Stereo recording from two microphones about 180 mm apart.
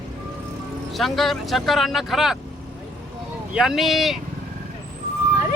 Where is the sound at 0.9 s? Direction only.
Centre (ahead or behind).